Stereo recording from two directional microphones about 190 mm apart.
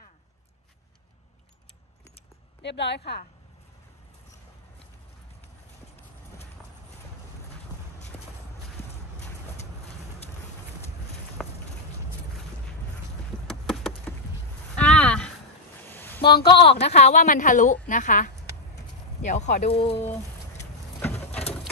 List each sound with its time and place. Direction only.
2.6 s a woman's voice: 65° left (ahead or behind)
11.4 s clip-clop: centre (ahead or behind)
13.5 s a sound: centre (ahead or behind)
16.2 s speech: 55° left (ahead or behind)
16.4 s a woman's voice: 30° left (ahead or behind)
20.5 s bird: 10° left (ahead or behind)